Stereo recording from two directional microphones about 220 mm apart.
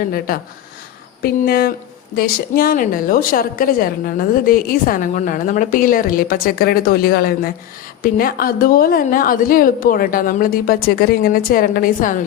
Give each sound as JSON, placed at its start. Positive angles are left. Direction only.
{"t": 1.2, "sound": "a woman's voice", "side_deg": 45}